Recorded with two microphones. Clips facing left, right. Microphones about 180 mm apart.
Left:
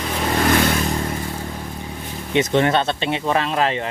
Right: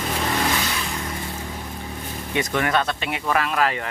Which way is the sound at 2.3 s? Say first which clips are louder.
Left 5 dB; 25° left (ahead or behind).